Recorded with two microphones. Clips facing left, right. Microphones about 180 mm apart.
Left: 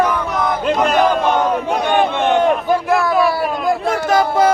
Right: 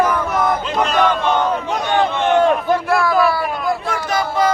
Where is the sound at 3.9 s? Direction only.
45° left (ahead or behind).